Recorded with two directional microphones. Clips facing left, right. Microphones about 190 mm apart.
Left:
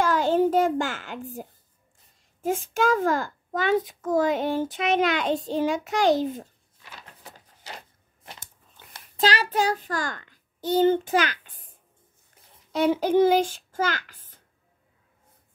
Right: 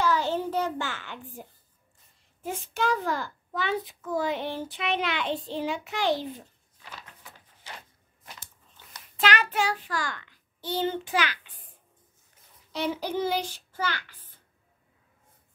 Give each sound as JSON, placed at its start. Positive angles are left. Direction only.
{"t": 0.0, "sound": "a sound", "side_deg": 50}
{"t": 2.4, "sound": "a child's voice", "side_deg": 45}
{"t": 7.2, "sound": "printer", "side_deg": 40}
{"t": 8.9, "sound": "a child's voice", "side_deg": 35}
{"t": 12.7, "sound": "a child's voice", "side_deg": 50}